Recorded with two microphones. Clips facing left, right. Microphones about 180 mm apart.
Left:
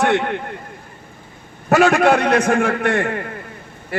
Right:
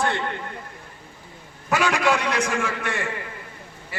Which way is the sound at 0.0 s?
70° left (ahead or behind).